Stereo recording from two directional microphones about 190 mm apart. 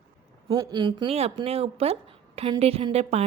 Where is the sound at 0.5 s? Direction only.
20° right (ahead or behind).